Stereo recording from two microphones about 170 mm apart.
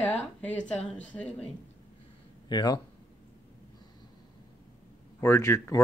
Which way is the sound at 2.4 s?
25° left (ahead or behind).